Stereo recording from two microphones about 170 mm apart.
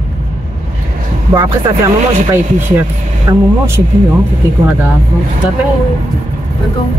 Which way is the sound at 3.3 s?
20° right (ahead or behind).